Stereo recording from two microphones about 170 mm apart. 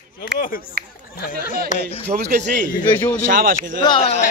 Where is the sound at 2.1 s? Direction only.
40° right (ahead or behind).